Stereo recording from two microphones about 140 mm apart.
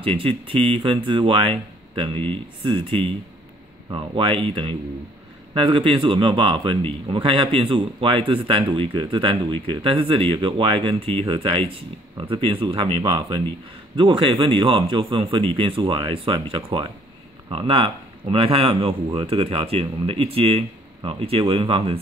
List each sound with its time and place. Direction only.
0.0 s speech: 40° right (ahead or behind)